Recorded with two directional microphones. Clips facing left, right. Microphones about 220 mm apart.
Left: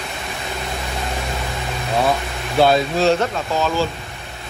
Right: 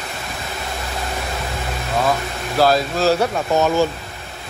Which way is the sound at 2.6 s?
Centre (ahead or behind).